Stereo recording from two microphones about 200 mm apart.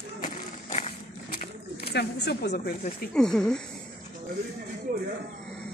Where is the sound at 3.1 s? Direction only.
5° left (ahead or behind).